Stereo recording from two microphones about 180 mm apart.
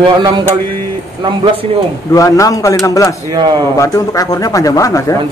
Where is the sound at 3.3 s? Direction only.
20° right (ahead or behind).